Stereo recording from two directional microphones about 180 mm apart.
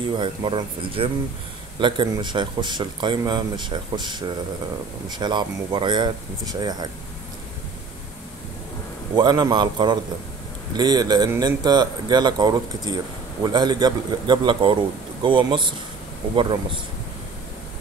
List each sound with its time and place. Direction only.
0.1 s speech: 25° right (ahead or behind)
9.1 s speech: 25° right (ahead or behind)